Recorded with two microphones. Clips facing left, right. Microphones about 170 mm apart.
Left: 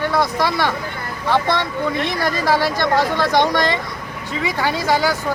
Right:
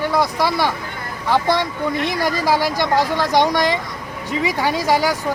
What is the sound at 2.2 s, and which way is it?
Speech, 10° right (ahead or behind).